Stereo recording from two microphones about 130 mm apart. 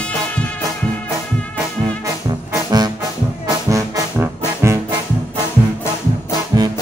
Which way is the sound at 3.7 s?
20° right (ahead or behind).